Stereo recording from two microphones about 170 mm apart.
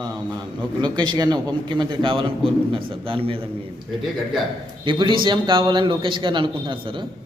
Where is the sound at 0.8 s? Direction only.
25° right (ahead or behind).